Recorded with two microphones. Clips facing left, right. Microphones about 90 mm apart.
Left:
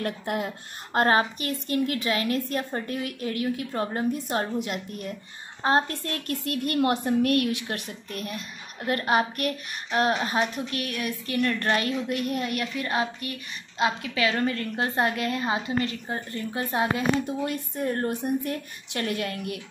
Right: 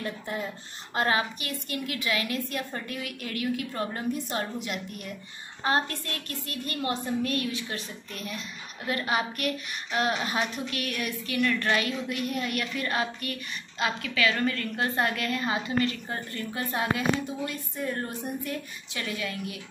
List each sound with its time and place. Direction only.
0.0 s a woman's voice: 60° left (ahead or behind)
0.9 s a woman's voice: 40° left (ahead or behind)
12.5 s a woman's voice: 20° left (ahead or behind)
17.4 s a woman's voice: 50° left (ahead or behind)